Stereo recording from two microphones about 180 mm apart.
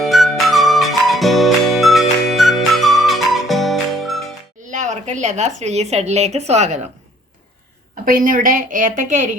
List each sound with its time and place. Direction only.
0.0 s music: centre (ahead or behind)
4.6 s speech: 45° right (ahead or behind)
8.0 s a woman's voice: 50° right (ahead or behind)